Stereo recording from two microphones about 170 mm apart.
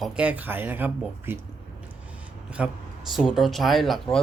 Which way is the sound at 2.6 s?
5° right (ahead or behind).